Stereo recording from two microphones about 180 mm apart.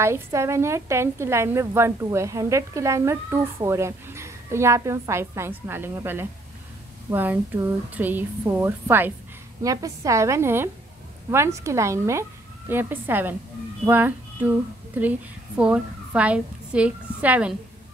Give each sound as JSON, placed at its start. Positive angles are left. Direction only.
{"t": 0.0, "sound": "a woman's voice", "side_deg": -15}